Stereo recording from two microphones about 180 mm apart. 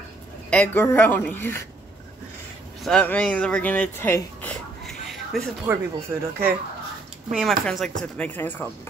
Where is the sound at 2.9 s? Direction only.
5° left (ahead or behind).